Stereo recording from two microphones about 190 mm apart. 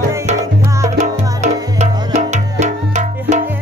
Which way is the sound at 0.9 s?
35° right (ahead or behind).